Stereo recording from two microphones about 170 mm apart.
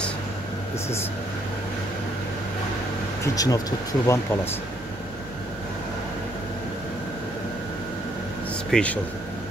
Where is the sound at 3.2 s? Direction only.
20° left (ahead or behind).